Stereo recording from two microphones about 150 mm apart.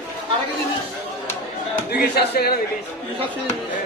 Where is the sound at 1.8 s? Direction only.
90° left.